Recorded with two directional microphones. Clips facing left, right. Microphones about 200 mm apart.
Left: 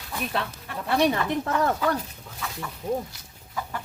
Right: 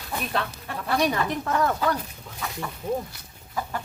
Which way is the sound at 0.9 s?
25° left (ahead or behind).